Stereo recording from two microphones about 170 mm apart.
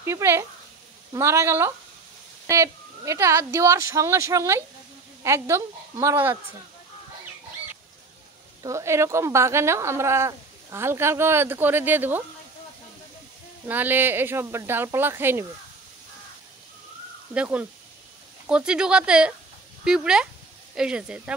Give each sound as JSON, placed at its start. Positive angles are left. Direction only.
{"t": 0.0, "sound": "a woman's voice", "side_deg": -15}
{"t": 8.6, "sound": "speech", "side_deg": -15}
{"t": 13.7, "sound": "speech", "side_deg": -10}
{"t": 17.3, "sound": "speech", "side_deg": -10}